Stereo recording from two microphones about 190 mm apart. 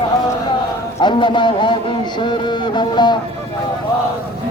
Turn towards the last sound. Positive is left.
turn(degrees=25)  # may be behind; listen again after turning